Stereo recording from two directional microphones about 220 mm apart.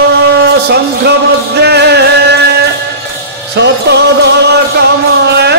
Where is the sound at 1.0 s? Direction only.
50° right (ahead or behind).